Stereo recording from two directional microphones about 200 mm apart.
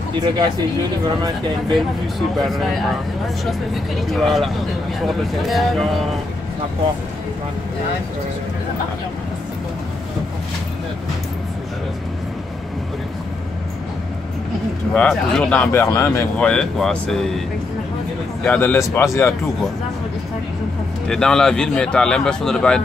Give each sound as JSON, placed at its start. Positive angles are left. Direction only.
{"t": 0.1, "sound": "speech", "side_deg": -20}
{"t": 1.7, "sound": "speech", "side_deg": 0}
{"t": 4.1, "sound": "speech", "side_deg": 0}
{"t": 15.0, "sound": "speech", "side_deg": 5}
{"t": 18.4, "sound": "a man's voice", "side_deg": 10}
{"t": 21.1, "sound": "speech", "side_deg": 5}